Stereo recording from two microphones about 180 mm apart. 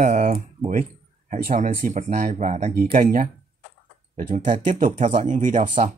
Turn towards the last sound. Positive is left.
turn(degrees=-45)  # may be behind; listen again after turning